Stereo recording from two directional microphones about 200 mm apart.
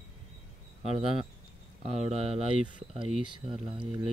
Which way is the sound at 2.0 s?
30° right (ahead or behind).